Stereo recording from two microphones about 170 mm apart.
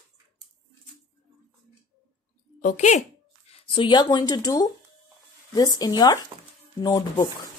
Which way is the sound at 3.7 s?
25° left (ahead or behind).